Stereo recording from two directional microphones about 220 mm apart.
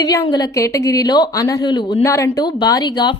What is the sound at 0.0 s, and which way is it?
A woman's voice, 15° left (ahead or behind).